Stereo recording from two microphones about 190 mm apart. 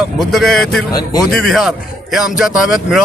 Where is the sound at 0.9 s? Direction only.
20° left (ahead or behind).